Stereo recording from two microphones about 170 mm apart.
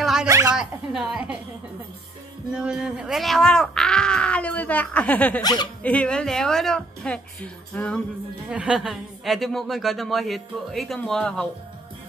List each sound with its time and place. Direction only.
0.0 s a sound: centre (ahead or behind)
0.3 s a sound: 20° right (ahead or behind)
0.6 s a woman's voice: 5° right (ahead or behind)
2.5 s a woman's voice: 5° right (ahead or behind)
5.4 s speech: 25° left (ahead or behind)
5.8 s a woman's voice: 5° left (ahead or behind)
8.5 s a woman's voice: 5° right (ahead or behind)